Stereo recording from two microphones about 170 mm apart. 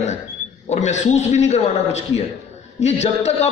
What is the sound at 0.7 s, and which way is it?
A man's voice, 45° left (ahead or behind).